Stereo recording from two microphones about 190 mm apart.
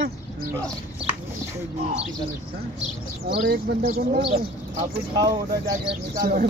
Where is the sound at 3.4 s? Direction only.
55° right (ahead or behind).